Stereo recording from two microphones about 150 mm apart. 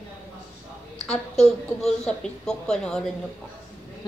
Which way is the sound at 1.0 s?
Centre (ahead or behind).